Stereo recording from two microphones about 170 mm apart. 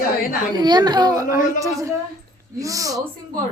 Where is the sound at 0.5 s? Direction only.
25° right (ahead or behind).